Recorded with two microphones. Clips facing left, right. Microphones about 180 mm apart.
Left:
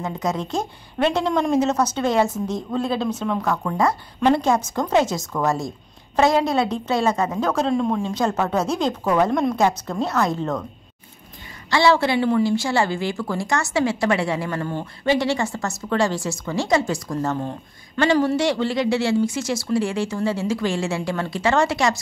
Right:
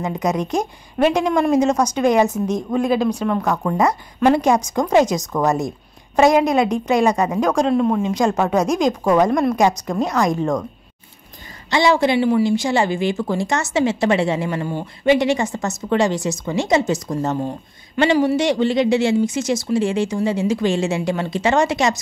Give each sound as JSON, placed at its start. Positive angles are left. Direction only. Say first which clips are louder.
{"t": 0.2, "sound": "speech", "louder": "right 4 dB", "side_deg": -15}
{"t": 3.1, "sound": "speech", "louder": "right 4 dB", "side_deg": 0}
{"t": 3.4, "sound": "speech", "louder": "right 2 dB", "side_deg": -20}
{"t": 11.7, "sound": "speech", "louder": "right 2 dB", "side_deg": -15}